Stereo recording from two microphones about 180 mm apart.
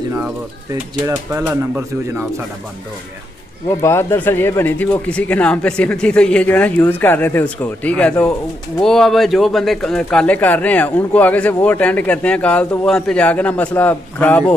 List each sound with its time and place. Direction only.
1.0 s speech: 15° right (ahead or behind)
3.8 s speech: 15° left (ahead or behind)